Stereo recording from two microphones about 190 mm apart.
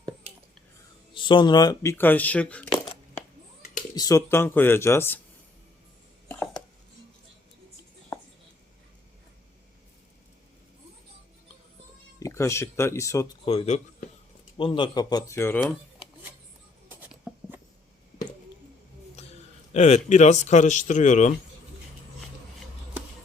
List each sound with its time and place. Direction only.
1.1 s speech: 25° left (ahead or behind); by 3.2 s 10° left (ahead or behind)
3.9 s speech: 20° left (ahead or behind)
6.2 s a sound: 10° left (ahead or behind)
12.2 s speech: 15° left (ahead or behind)
13.4 s speech: 30° left (ahead or behind); by 15.6 s 15° left (ahead or behind)
16.9 s a sound: 10° right (ahead or behind)
19.7 s speech: 35° left (ahead or behind)